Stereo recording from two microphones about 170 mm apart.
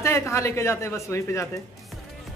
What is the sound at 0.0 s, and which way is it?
Speech, 15° left (ahead or behind).